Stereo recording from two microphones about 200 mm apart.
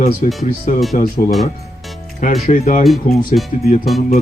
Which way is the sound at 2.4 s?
40° left (ahead or behind).